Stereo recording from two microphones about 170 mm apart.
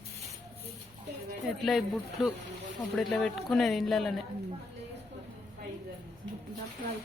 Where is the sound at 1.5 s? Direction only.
Centre (ahead or behind).